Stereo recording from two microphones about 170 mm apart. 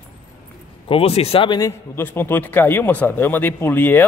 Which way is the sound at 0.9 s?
35° left (ahead or behind).